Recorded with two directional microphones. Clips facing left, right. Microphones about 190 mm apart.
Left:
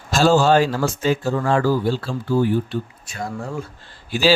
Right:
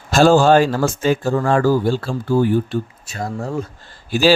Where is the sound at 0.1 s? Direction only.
55° right (ahead or behind).